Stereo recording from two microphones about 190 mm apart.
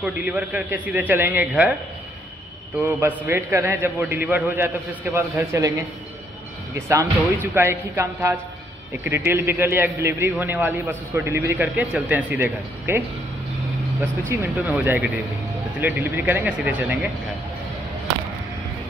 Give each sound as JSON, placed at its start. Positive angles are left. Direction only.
{"t": 0.0, "sound": "a man's voice", "side_deg": -5}
{"t": 2.8, "sound": "a man's voice", "side_deg": -15}
{"t": 14.3, "sound": "a man's voice", "side_deg": -10}